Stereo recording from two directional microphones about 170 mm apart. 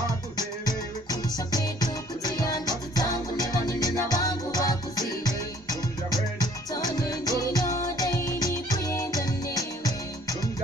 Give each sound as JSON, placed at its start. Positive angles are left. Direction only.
{"t": 1.5, "sound": "music", "side_deg": 20}